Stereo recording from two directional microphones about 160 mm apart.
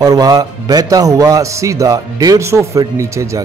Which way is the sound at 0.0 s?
25° right (ahead or behind).